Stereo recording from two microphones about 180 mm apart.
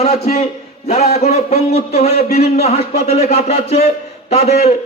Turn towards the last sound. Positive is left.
turn(degrees=35)  # may be behind; listen again after turning